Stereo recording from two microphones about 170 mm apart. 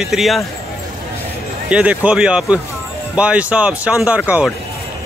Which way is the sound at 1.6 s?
5° right (ahead or behind).